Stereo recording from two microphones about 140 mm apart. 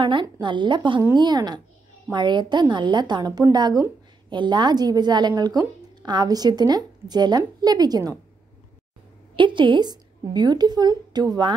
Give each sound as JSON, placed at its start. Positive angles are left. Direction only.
{"t": 0.0, "sound": "a woman's voice", "side_deg": -35}
{"t": 9.3, "sound": "a woman's voice", "side_deg": -35}